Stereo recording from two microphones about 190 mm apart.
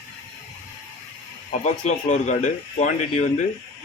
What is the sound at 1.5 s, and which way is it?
A man's voice, 40° left (ahead or behind).